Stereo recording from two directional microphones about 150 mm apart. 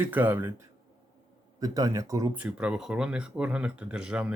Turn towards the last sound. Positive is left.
turn(degrees=-5)  # may be behind; listen again after turning